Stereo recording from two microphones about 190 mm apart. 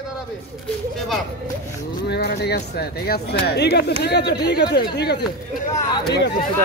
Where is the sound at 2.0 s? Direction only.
60° left (ahead or behind).